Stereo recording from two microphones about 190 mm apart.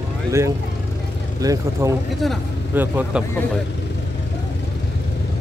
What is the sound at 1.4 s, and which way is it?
Speech, 20° right (ahead or behind).